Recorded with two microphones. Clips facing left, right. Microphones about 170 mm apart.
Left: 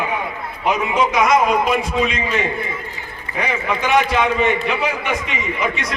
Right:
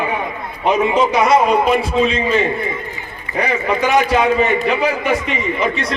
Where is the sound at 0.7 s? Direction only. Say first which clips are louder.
Right 4 dB; 35° right (ahead or behind).